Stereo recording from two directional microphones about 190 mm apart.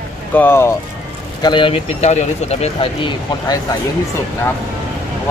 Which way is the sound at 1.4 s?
25° left (ahead or behind).